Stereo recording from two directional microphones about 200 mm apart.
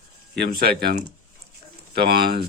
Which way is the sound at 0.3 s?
50° right (ahead or behind).